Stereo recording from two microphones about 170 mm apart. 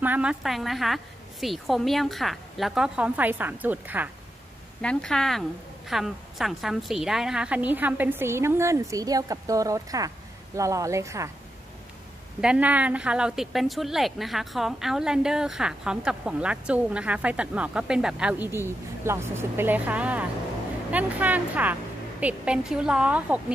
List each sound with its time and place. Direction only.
0.0 s a woman's voice: 10° right (ahead or behind)
4.8 s a woman's voice: 5° left (ahead or behind); by 11.2 s 20° right (ahead or behind)
12.4 s a woman's voice: 5° right (ahead or behind)